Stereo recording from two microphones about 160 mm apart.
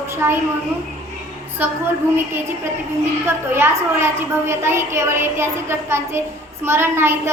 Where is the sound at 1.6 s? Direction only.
10° right (ahead or behind).